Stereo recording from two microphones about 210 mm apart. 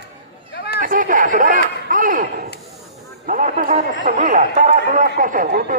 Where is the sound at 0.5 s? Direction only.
50° left (ahead or behind).